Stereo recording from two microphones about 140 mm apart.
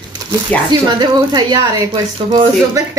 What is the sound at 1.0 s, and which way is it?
Speech, 30° right (ahead or behind).